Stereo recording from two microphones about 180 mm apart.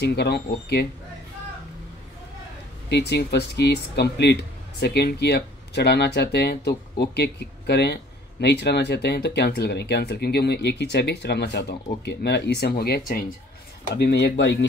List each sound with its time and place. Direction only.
0.0 s speech: 65° left (ahead or behind)
2.9 s speech: 70° left (ahead or behind); by 14.7 s 85° left